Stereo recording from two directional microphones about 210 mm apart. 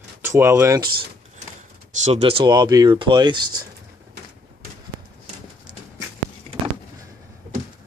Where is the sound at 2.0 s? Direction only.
30° right (ahead or behind).